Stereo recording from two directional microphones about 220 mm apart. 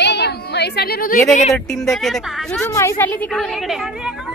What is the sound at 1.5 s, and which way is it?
Speech, centre (ahead or behind).